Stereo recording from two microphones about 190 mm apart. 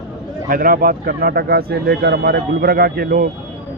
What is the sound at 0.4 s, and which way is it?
A man's voice, 50° right (ahead or behind).